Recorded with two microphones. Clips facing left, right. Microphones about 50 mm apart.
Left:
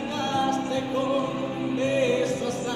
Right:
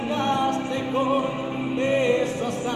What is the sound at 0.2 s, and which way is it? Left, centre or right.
Music, right.